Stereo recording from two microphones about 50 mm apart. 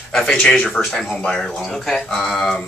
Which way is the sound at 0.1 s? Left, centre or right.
Centre.